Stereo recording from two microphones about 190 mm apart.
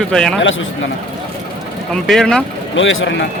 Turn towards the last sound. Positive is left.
turn(degrees=85)